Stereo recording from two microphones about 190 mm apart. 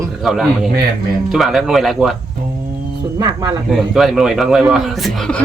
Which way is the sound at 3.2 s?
20° right (ahead or behind).